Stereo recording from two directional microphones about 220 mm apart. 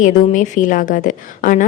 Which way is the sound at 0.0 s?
35° left (ahead or behind).